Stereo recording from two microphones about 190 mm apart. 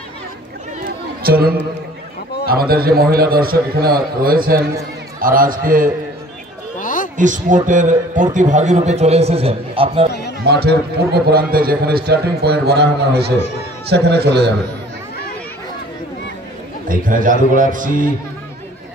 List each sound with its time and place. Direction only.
1.2 s a man's voice: 55° right (ahead or behind)
6.8 s a sound: 45° left (ahead or behind)
7.2 s a man's voice: 40° right (ahead or behind)
10.4 s a man's voice: 60° right (ahead or behind)
16.9 s a man's voice: 45° right (ahead or behind)